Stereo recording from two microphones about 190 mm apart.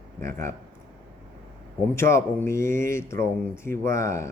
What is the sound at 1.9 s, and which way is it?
Mantra, 15° left (ahead or behind).